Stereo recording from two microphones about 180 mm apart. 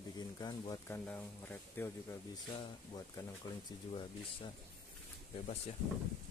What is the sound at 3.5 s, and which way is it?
Speech, 20° left (ahead or behind).